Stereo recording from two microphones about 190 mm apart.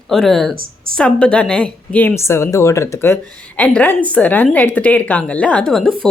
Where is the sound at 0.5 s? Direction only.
50° right (ahead or behind).